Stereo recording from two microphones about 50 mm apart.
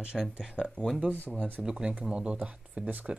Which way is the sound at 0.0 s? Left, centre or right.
Right.